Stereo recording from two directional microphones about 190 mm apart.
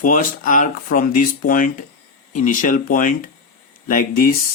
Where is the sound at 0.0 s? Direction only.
45° left (ahead or behind).